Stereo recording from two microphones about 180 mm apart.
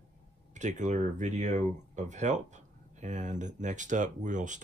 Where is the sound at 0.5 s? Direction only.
40° right (ahead or behind).